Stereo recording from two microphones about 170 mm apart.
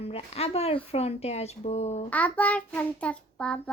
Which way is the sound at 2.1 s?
10° left (ahead or behind).